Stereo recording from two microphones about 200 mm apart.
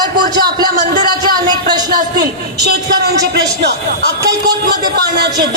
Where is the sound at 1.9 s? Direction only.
45° right (ahead or behind).